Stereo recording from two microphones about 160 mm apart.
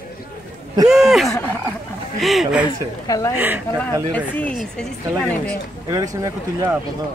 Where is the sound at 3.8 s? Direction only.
10° left (ahead or behind).